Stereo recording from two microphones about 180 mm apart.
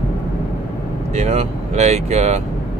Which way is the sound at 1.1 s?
40° right (ahead or behind).